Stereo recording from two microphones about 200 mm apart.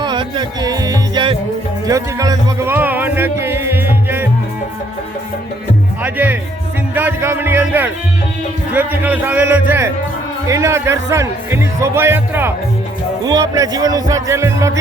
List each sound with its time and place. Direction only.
0.0 s music: 20° right (ahead or behind)
1.9 s speech: 15° right (ahead or behind)
6.0 s speech: 10° right (ahead or behind)
6.9 s music: 10° right (ahead or behind)
8.7 s speech: 10° right (ahead or behind)